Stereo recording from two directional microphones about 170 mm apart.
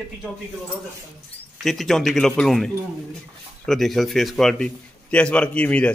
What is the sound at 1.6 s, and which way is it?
A man's voice, centre (ahead or behind).